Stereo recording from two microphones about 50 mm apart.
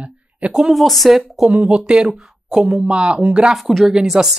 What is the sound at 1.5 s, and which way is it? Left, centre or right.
Speech, right.